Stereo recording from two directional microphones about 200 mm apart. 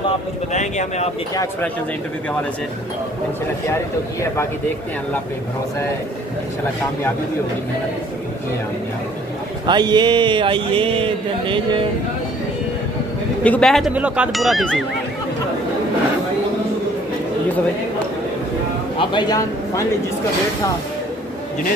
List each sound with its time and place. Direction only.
0.5 s speech: 35° left (ahead or behind)
9.7 s a sound: 20° right (ahead or behind)
13.4 s speech: 5° left (ahead or behind)
18.9 s a man's voice: 20° left (ahead or behind)